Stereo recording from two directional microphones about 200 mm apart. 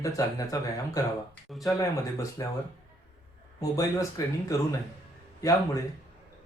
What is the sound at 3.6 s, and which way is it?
Speech, 15° left (ahead or behind).